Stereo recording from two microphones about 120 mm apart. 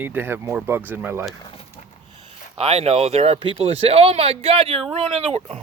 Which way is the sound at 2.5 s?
55° right (ahead or behind).